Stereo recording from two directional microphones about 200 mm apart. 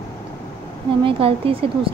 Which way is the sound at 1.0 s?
25° right (ahead or behind).